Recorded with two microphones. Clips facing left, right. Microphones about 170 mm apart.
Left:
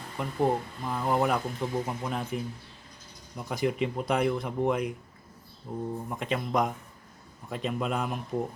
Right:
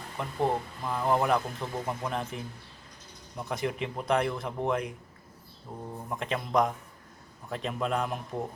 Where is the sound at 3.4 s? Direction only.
5° left (ahead or behind).